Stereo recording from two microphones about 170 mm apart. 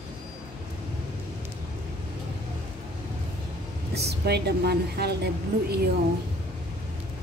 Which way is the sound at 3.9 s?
75° right (ahead or behind).